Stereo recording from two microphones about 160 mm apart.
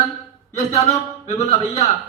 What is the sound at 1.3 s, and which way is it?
Speech, 40° left (ahead or behind).